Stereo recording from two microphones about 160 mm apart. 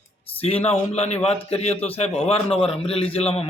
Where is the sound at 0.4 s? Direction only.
40° left (ahead or behind).